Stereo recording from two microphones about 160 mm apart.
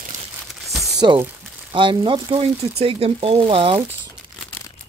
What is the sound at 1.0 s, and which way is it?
Speech, 25° right (ahead or behind).